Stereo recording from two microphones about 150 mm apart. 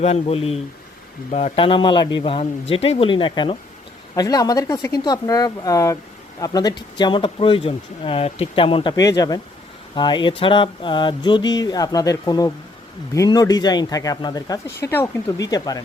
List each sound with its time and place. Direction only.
0.0 s speech: 40° left (ahead or behind); by 15.8 s 25° left (ahead or behind)